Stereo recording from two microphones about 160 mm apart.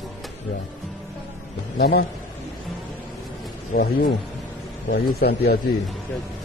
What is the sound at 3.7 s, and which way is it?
Speech, 60° left (ahead or behind).